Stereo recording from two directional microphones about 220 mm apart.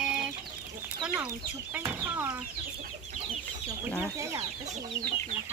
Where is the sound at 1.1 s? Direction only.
10° right (ahead or behind).